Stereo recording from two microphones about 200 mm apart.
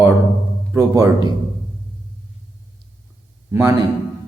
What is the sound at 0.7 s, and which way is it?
Speech, 15° right (ahead or behind).